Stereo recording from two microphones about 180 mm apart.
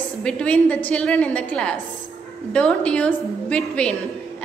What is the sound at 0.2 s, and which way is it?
A woman's voice, 5° left (ahead or behind).